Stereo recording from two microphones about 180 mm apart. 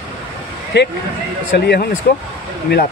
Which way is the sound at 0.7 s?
70° left (ahead or behind).